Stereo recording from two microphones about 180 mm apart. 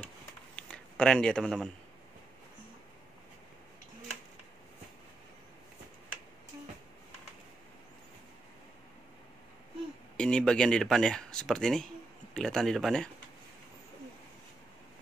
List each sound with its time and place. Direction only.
0.6 s speech: 5° left (ahead or behind)
10.1 s speech: 5° left (ahead or behind)